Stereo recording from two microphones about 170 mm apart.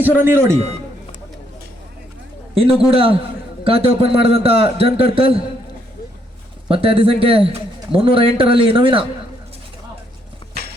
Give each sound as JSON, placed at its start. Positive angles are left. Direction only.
{"t": 0.0, "sound": "a man's voice", "side_deg": -10}
{"t": 2.9, "sound": "a man's voice", "side_deg": -35}
{"t": 6.7, "sound": "a man's voice", "side_deg": -35}